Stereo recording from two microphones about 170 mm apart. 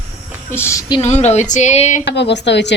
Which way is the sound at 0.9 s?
40° left (ahead or behind).